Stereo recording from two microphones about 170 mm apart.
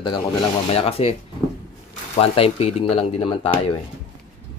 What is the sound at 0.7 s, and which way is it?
Speech, 35° left (ahead or behind).